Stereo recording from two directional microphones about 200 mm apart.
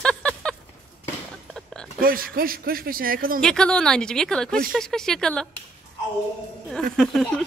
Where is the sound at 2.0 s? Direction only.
45° right (ahead or behind).